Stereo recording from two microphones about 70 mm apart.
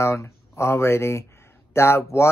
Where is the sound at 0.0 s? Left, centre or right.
Left.